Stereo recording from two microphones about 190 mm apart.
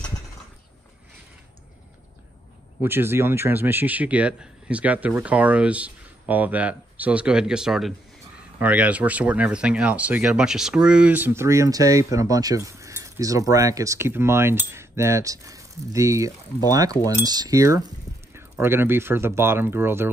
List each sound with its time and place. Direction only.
2.8 s speech: 10° right (ahead or behind)